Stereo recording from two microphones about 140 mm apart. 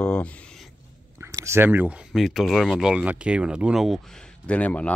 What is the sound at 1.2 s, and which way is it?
Speech, 20° right (ahead or behind).